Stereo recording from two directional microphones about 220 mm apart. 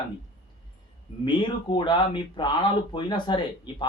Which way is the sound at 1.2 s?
20° left (ahead or behind).